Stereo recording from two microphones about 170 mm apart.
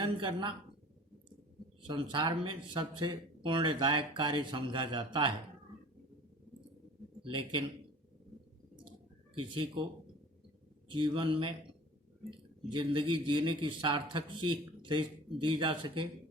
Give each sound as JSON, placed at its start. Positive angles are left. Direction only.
{"t": 0.0, "sound": "speech", "side_deg": -30}
{"t": 1.9, "sound": "speech", "side_deg": -25}
{"t": 7.2, "sound": "a man's voice", "side_deg": -30}
{"t": 10.8, "sound": "speech", "side_deg": -30}
{"t": 12.7, "sound": "speech", "side_deg": -30}